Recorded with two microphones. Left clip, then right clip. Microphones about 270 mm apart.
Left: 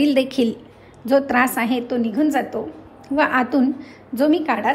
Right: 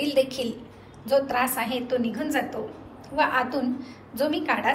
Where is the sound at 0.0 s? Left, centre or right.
Left.